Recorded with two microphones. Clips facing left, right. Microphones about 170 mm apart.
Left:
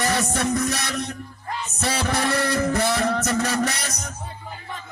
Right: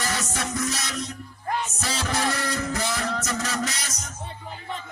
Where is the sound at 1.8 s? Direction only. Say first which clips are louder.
Left 7 dB; 60° left (ahead or behind).